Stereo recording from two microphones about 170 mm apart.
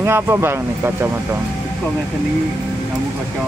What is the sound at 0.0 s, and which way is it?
Speech, 15° right (ahead or behind).